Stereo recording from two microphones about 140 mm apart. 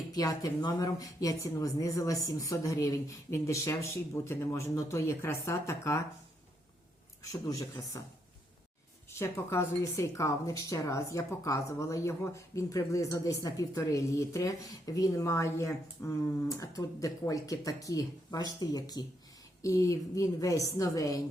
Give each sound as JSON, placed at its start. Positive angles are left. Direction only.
{"t": 0.1, "sound": "a woman's voice", "side_deg": 25}
{"t": 7.2, "sound": "a woman's voice", "side_deg": 25}
{"t": 9.0, "sound": "a woman's voice", "side_deg": 20}